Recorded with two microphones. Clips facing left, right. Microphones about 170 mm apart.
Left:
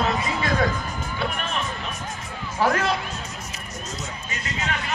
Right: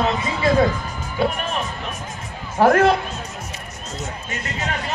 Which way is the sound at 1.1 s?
40° right (ahead or behind).